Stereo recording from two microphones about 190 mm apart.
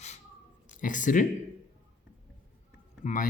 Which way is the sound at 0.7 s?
45° left (ahead or behind).